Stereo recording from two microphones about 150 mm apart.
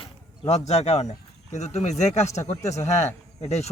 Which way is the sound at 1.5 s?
50° left (ahead or behind).